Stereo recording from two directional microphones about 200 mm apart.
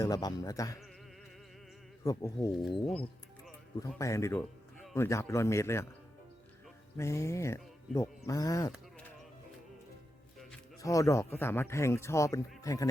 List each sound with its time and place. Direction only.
0.0 s speech: 20° left (ahead or behind)
2.0 s speech: 15° left (ahead or behind)
6.9 s speech: 15° left (ahead or behind)
10.8 s speech: 15° left (ahead or behind)